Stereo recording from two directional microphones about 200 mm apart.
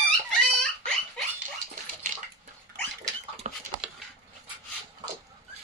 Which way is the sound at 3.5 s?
35° right (ahead or behind).